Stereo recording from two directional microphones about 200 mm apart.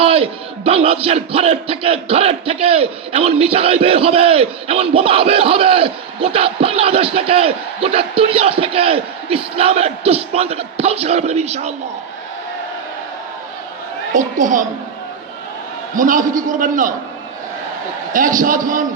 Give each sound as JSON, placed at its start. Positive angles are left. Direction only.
{"t": 0.0, "sound": "speech", "side_deg": -30}
{"t": 14.1, "sound": "a man's voice", "side_deg": -40}
{"t": 16.0, "sound": "a man's voice", "side_deg": -40}
{"t": 18.1, "sound": "a man's voice", "side_deg": -40}